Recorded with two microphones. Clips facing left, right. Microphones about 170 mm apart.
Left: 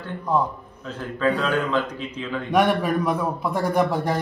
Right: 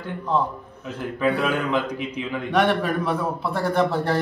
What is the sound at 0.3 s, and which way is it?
Speech, 10° left (ahead or behind).